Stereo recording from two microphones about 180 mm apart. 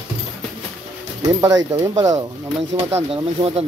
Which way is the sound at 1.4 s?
20° right (ahead or behind).